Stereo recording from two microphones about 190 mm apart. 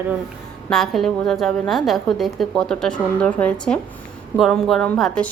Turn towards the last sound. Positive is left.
turn(degrees=0)  # may be behind; listen again after turning